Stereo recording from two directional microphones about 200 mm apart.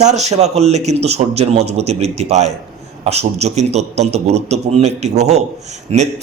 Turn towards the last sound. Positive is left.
turn(degrees=-30)  # may be behind; listen again after turning